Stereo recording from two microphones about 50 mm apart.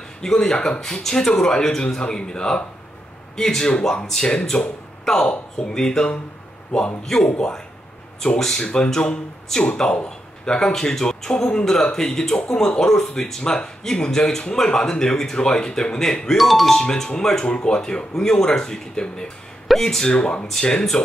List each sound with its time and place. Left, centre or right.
0.2 s speech: centre
16.3 s speech: centre
16.8 s speech: centre
20.1 s speech: centre